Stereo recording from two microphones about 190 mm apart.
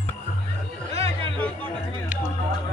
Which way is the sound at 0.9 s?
30° right (ahead or behind).